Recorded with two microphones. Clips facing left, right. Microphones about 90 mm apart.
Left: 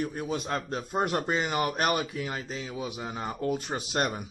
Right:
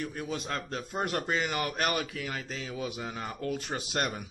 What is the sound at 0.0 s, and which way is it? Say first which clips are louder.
A man's voice: left 4 dB; 25° left (ahead or behind).